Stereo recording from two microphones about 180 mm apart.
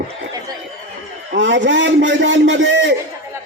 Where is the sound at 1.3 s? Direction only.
90° right.